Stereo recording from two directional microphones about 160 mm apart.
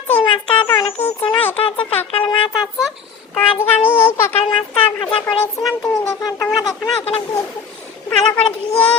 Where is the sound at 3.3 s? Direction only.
15° left (ahead or behind).